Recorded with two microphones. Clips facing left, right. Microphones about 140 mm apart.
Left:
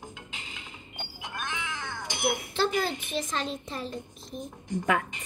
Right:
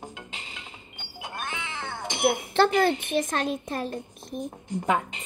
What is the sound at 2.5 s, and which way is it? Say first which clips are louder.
A woman's voice: right 9 dB; 65° right (ahead or behind).